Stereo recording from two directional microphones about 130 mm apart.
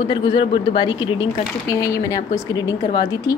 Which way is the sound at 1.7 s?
25° left (ahead or behind).